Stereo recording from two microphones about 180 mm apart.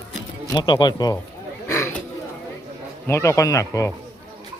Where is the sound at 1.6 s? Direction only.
15° left (ahead or behind).